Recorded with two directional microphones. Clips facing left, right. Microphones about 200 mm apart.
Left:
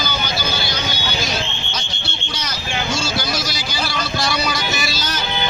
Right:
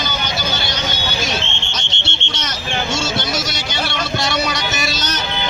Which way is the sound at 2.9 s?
20° right (ahead or behind).